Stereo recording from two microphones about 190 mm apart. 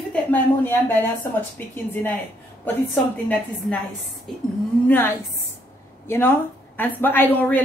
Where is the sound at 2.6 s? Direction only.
10° left (ahead or behind).